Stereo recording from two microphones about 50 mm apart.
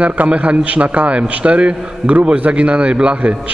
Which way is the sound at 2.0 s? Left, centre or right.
Right.